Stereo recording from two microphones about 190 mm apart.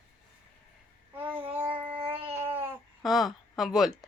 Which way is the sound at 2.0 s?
30° right (ahead or behind).